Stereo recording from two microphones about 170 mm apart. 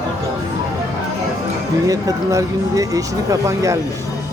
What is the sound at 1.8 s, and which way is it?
Speech, 20° right (ahead or behind).